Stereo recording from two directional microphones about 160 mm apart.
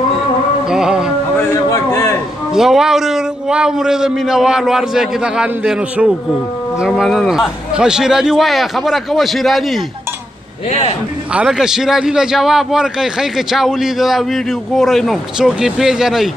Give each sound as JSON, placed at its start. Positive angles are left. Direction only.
{"t": 0.7, "sound": "music", "side_deg": -5}
{"t": 1.3, "sound": "a sound", "side_deg": 20}
{"t": 2.5, "sound": "a man's voice", "side_deg": 0}
{"t": 11.3, "sound": "a man's voice", "side_deg": -5}